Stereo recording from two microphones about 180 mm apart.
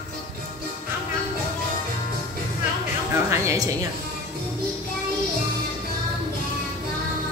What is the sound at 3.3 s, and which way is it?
Music, 15° right (ahead or behind).